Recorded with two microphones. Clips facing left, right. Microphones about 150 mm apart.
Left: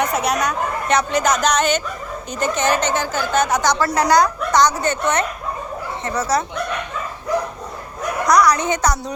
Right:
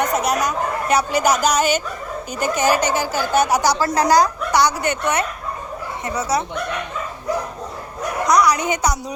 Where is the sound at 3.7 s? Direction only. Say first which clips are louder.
Left 1 dB; 35° right (ahead or behind).